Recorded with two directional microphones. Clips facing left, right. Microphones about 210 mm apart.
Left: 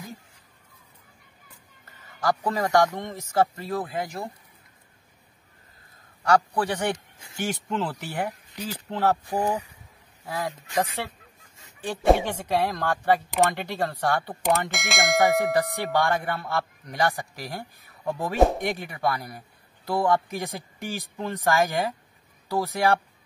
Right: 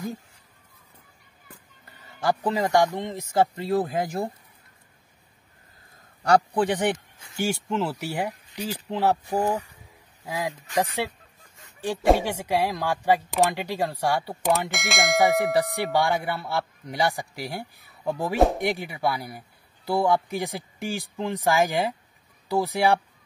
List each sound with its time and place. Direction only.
2.1 s speech: 30° right (ahead or behind)
2.5 s speech: 10° right (ahead or behind)
3.6 s speech: 30° right (ahead or behind)
3.9 s speech: 45° right (ahead or behind)
6.5 s a man's voice: 20° right (ahead or behind)
7.3 s speech: 5° right (ahead or behind)
9.4 s speech: 10° left (ahead or behind)
10.2 s speech: 15° right (ahead or behind)
14.3 s clang: centre (ahead or behind)
15.5 s speech: 15° right (ahead or behind)